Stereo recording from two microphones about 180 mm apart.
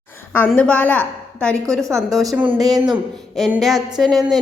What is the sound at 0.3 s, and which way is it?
A woman's voice, 5° left (ahead or behind).